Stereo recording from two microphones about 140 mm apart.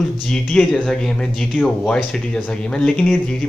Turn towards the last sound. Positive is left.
turn(degrees=5)  # may be behind; listen again after turning